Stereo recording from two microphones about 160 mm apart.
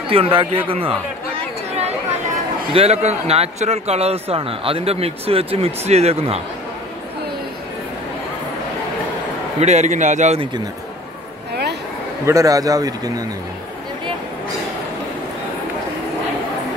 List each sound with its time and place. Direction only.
0.1 s a man's voice: 35° right (ahead or behind)
2.7 s a man's voice: 40° right (ahead or behind)
9.6 s a man's voice: 45° right (ahead or behind)
12.3 s speech: 20° right (ahead or behind)